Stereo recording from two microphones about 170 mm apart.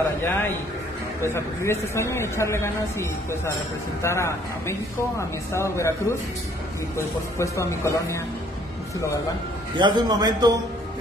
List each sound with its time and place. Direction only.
0.2 s speech: 10° left (ahead or behind)
9.8 s a man's voice: 25° right (ahead or behind)